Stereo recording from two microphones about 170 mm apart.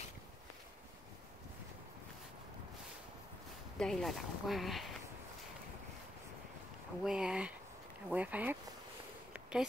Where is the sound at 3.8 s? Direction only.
Centre (ahead or behind).